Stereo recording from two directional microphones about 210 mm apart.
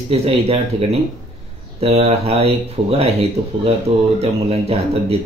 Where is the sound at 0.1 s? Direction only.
30° right (ahead or behind).